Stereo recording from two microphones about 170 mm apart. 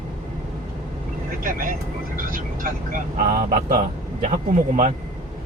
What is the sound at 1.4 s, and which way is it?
Speech, 55° right (ahead or behind).